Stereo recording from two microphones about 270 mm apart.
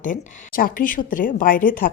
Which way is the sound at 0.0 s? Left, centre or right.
Left.